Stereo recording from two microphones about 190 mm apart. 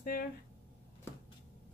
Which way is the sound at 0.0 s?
50° left (ahead or behind).